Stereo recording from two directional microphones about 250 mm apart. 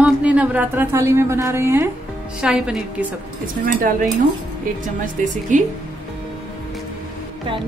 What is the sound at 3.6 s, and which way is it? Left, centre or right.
A woman's voice, right.